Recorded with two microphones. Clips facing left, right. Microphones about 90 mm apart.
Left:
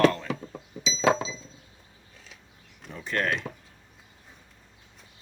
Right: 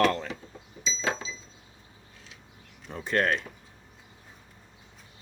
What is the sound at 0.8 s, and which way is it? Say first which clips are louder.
Chink: left 8 dB; 85° left.